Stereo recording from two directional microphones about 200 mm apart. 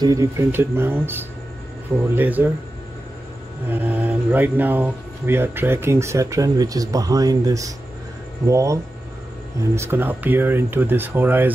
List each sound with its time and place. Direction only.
0.0 s speech: 15° right (ahead or behind)
3.7 s speech: 10° right (ahead or behind)